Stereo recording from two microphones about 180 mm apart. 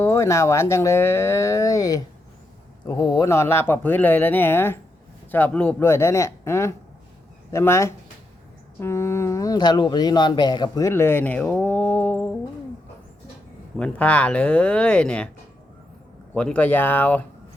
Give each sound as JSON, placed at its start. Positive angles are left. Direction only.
{"t": 0.0, "sound": "speech", "side_deg": 15}
{"t": 13.7, "sound": "speech", "side_deg": 5}
{"t": 16.3, "sound": "speech", "side_deg": 5}